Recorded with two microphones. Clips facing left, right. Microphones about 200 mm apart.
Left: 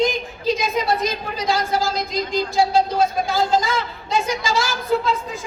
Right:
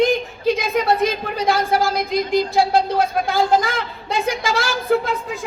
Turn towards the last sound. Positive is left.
turn(degrees=-55)  # may be behind; listen again after turning